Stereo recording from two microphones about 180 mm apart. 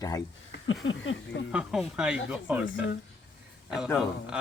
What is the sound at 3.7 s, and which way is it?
Speech, centre (ahead or behind).